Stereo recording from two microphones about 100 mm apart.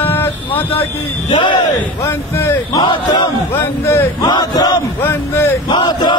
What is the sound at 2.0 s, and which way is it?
A man's voice, 25° left (ahead or behind).